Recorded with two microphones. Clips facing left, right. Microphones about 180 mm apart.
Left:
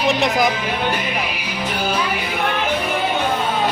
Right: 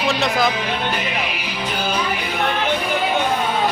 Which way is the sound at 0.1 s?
15° left (ahead or behind).